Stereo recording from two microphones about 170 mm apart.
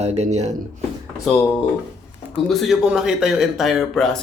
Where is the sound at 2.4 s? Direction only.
Centre (ahead or behind).